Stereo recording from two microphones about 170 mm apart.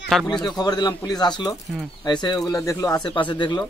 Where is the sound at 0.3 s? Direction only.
25° left (ahead or behind).